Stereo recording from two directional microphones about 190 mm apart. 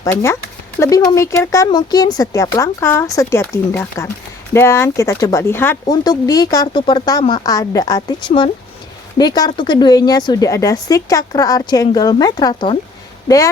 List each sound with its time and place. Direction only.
0.0 s speech: 15° left (ahead or behind)